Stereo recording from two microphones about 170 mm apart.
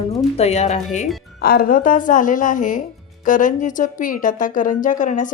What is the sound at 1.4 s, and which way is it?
A woman's voice, 65° left (ahead or behind).